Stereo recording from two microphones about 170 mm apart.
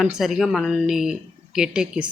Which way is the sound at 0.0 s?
Centre (ahead or behind).